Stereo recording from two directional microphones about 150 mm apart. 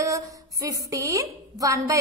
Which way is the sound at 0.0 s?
20° right (ahead or behind).